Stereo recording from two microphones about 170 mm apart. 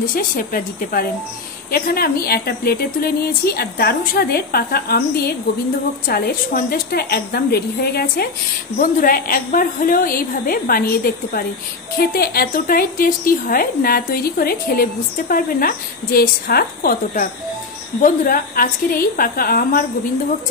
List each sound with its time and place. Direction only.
0.0 s a woman's voice: 55° left (ahead or behind)
8.7 s a woman's voice: 55° left (ahead or behind)